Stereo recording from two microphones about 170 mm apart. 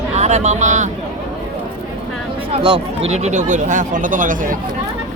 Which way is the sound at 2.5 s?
30° right (ahead or behind).